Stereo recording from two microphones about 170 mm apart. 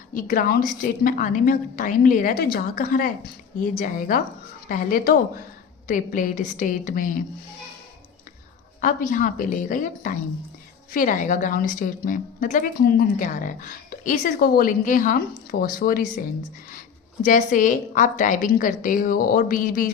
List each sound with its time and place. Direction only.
0.1 s a woman's voice: 55° left (ahead or behind)
8.8 s a woman's voice: 55° left (ahead or behind)
17.2 s a woman's voice: 50° left (ahead or behind)